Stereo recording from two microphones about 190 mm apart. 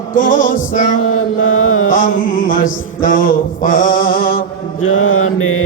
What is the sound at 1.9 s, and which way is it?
Music, 45° left (ahead or behind).